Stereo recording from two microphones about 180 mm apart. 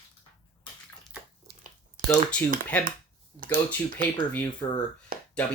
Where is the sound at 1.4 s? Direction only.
50° right (ahead or behind).